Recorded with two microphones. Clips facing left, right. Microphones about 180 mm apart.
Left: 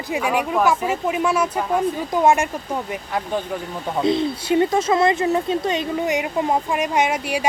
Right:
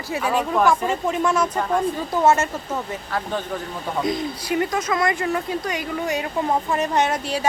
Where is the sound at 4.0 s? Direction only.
25° left (ahead or behind).